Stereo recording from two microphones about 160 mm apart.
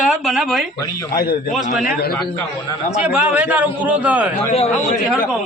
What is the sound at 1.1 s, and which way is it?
Speech, 70° left (ahead or behind).